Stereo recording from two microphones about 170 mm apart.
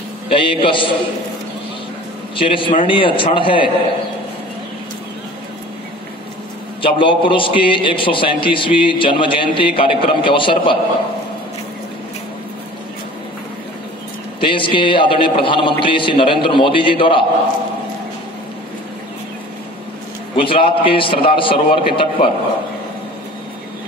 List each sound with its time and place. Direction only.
0.3 s a man's voice: 30° left (ahead or behind)
2.3 s a man's voice: 30° left (ahead or behind)
6.8 s a man's voice: 30° left (ahead or behind)
14.4 s a man's voice: 30° left (ahead or behind)
20.3 s a man's voice: 30° left (ahead or behind)